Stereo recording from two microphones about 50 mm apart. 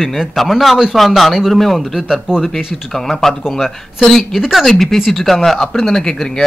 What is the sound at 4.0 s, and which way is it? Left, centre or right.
A man's voice, centre.